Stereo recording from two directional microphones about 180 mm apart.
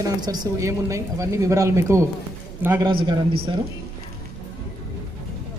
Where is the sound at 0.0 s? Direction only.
20° right (ahead or behind).